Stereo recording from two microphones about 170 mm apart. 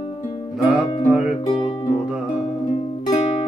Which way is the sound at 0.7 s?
5° right (ahead or behind).